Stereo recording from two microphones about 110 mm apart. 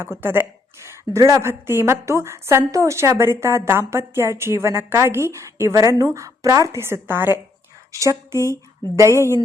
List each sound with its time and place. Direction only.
0.0 s a woman's voice: 20° right (ahead or behind)